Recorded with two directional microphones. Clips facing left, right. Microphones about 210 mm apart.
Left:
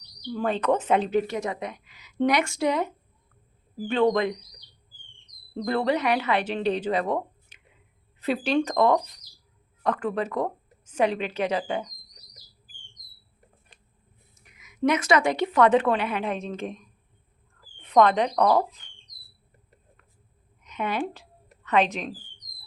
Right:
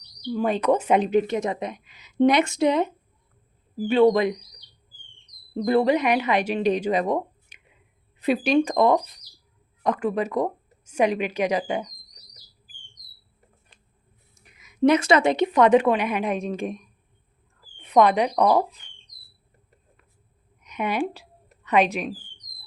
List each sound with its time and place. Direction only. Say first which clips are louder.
0.3 s speech: right 3 dB; 10° right (ahead or behind)
3.8 s a woman's voice: right 4 dB; 10° right (ahead or behind)
5.5 s a woman's voice: right 5 dB; 10° right (ahead or behind)
14.4 s a woman's voice: right 5 dB; 30° right (ahead or behind); by 16.8 s 10° right (ahead or behind)
17.8 s a woman's voice: right 1 dB; 10° right (ahead or behind)
20.7 s a sound: right 3 dB; 15° right (ahead or behind)